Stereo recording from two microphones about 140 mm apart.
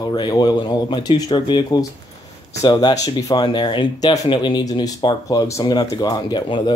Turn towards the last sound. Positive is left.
turn(degrees=30)  # may be behind; listen again after turning